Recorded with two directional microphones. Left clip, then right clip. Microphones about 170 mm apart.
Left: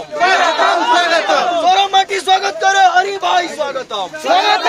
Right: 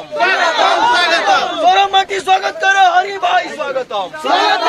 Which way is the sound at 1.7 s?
45° left (ahead or behind).